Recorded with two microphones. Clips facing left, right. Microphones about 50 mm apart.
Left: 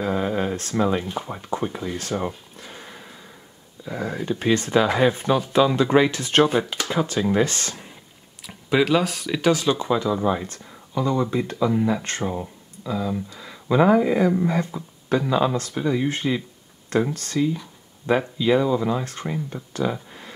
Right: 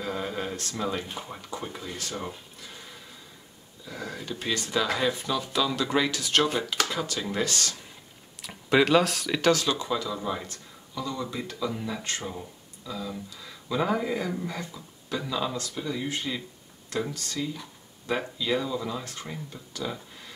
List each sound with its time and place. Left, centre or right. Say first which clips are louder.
0.0 s a sound: left 8 dB; left
0.6 s speech: left 8 dB; left
2.0 s speech: left 8 dB; left
8.5 s speech: left 2 dB; centre; by 18.2 s left
18.4 s speech: left 10 dB; left